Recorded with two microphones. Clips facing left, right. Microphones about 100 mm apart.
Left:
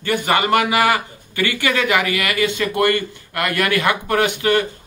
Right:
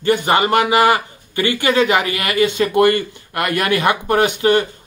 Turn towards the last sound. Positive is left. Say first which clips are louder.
# right 3 dB
turn(degrees=-25)  # may be behind; listen again after turning